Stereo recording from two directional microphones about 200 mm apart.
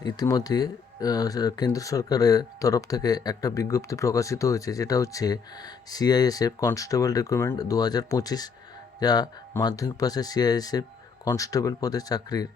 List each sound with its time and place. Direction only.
0.0 s speech: 20° left (ahead or behind)